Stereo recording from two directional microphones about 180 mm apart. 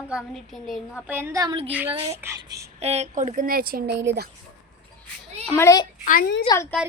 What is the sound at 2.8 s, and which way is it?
Speech, 35° right (ahead or behind).